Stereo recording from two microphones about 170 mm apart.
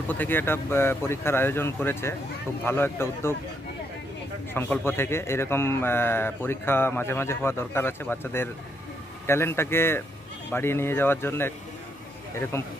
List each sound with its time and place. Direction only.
0.1 s speech: 10° left (ahead or behind)
4.6 s speech: 15° left (ahead or behind)
12.5 s speech: 15° left (ahead or behind)